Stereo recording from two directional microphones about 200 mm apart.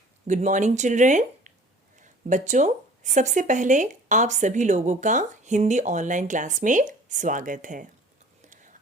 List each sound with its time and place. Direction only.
0.3 s a woman's voice: 35° right (ahead or behind)